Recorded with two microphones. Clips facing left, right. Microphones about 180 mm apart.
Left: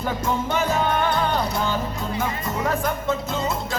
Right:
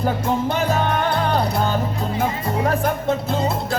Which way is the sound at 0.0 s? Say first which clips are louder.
Right 4 dB; 35° right (ahead or behind).